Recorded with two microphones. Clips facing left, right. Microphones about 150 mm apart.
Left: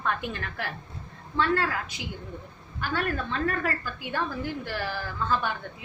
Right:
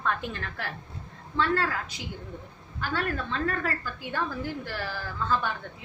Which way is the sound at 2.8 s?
5° left (ahead or behind).